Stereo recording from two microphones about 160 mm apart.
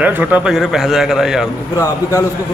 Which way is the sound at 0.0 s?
10° right (ahead or behind).